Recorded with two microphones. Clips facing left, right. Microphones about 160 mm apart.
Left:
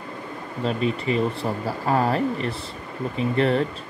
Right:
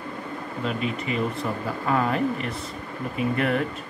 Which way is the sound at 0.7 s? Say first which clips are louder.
Left 5 dB; 35° left (ahead or behind).